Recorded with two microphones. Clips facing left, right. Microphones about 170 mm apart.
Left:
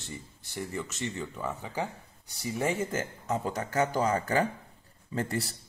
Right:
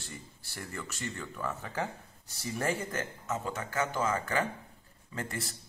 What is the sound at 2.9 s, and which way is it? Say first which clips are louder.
A man's voice: left 4 dB; 30° left (ahead or behind).